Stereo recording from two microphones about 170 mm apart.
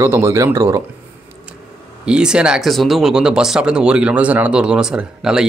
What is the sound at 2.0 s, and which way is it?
Speech, 5° right (ahead or behind).